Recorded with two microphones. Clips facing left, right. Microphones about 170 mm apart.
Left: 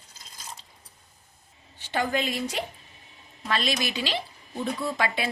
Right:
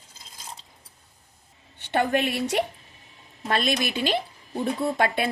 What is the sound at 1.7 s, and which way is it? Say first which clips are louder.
Speech: right 4 dB; 60° right (ahead or behind).